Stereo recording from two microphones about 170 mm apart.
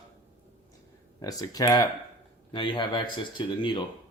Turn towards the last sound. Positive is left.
turn(degrees=30)  # may be behind; listen again after turning